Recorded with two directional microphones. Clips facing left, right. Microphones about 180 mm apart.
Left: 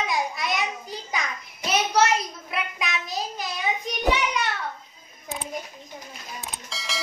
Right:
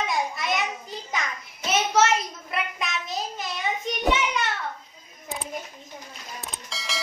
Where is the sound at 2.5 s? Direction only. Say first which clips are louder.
Even; centre (ahead or behind).